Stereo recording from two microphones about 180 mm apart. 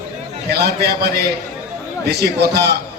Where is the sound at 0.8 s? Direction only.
65° right (ahead or behind).